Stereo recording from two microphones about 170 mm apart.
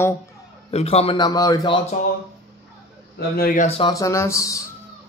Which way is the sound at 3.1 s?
60° left (ahead or behind).